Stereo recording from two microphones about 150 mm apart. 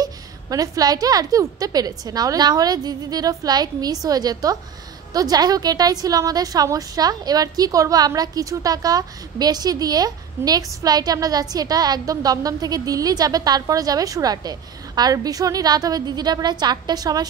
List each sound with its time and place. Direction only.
0.0 s a woman's voice: 25° right (ahead or behind)